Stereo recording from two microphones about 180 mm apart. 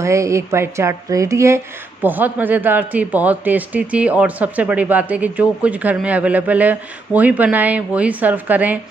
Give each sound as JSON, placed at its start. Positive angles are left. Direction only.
{"t": 0.0, "sound": "a man's voice", "side_deg": -15}